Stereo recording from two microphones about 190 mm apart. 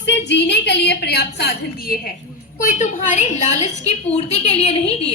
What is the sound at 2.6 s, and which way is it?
A woman's voice, 40° left (ahead or behind).